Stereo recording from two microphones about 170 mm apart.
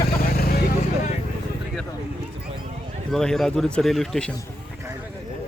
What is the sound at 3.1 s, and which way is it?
Speech, 5° left (ahead or behind).